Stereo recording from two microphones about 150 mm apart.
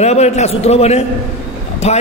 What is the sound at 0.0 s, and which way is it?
A man's voice, 45° left (ahead or behind).